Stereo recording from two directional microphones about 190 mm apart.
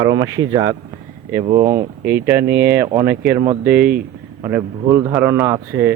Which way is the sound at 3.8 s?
50° right (ahead or behind).